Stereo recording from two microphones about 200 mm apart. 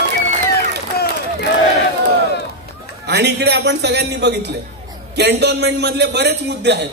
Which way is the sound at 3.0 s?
55° right (ahead or behind).